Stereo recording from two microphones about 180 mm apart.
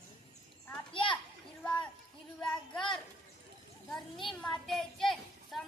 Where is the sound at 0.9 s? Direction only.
30° left (ahead or behind).